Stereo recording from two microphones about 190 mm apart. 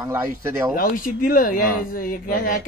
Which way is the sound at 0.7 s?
45° left (ahead or behind).